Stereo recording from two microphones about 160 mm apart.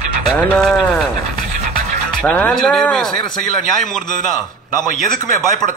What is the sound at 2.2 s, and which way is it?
A man's voice, 10° left (ahead or behind).